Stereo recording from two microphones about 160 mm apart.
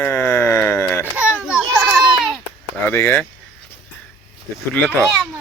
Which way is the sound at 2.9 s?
15° left (ahead or behind).